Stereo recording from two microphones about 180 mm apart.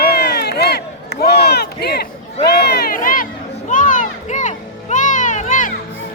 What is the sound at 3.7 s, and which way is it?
Music, 45° left (ahead or behind).